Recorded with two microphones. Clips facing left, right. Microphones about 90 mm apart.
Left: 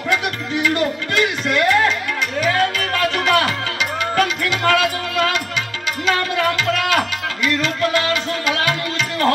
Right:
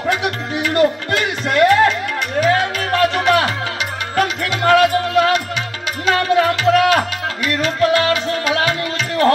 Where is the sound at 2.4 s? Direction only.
30° right (ahead or behind).